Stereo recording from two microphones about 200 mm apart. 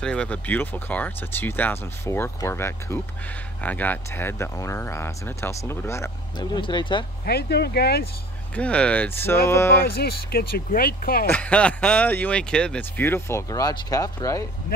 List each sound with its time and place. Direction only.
0.0 s speech: 5° left (ahead or behind); by 7.1 s 25° left (ahead or behind)
7.2 s speech: 55° left (ahead or behind)
8.5 s speech: 5° left (ahead or behind)
9.8 s speech: 50° left (ahead or behind)
11.2 s speech: 5° left (ahead or behind)